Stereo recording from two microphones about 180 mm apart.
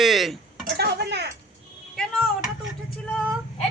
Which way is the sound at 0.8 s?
65° right (ahead or behind).